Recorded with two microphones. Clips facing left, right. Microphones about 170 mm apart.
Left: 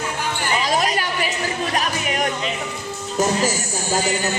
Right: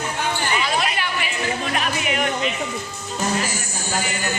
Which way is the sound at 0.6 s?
40° left (ahead or behind).